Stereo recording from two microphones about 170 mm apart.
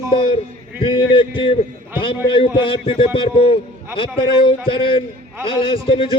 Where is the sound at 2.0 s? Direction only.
30° left (ahead or behind).